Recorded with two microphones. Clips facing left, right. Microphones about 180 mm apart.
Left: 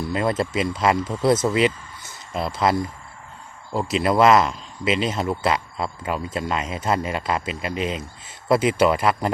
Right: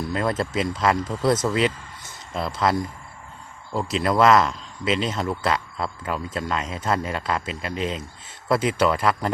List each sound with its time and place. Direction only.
0.1 s speech: 5° left (ahead or behind)